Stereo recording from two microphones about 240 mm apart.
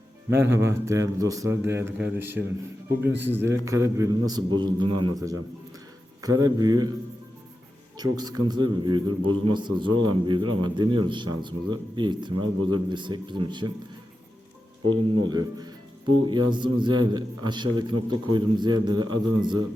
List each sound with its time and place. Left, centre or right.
0.3 s a man's voice: centre
4.9 s a man's voice: right
6.2 s a man's voice: centre
7.9 s a man's voice: centre
14.8 s a man's voice: centre